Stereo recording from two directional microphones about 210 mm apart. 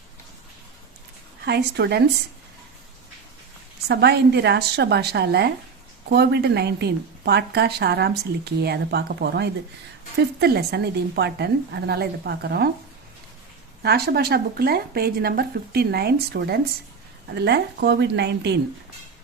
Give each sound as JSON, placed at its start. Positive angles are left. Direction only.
{"t": 1.5, "sound": "a woman's voice", "side_deg": -50}
{"t": 3.8, "sound": "a woman's voice", "side_deg": -50}
{"t": 13.8, "sound": "a woman's voice", "side_deg": -50}